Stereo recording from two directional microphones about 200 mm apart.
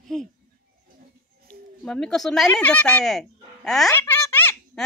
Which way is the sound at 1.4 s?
5° left (ahead or behind).